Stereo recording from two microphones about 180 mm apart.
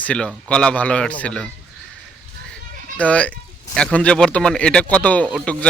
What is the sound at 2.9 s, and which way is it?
A man's voice, 5° left (ahead or behind).